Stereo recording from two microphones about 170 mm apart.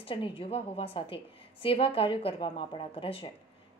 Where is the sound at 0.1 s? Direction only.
30° left (ahead or behind).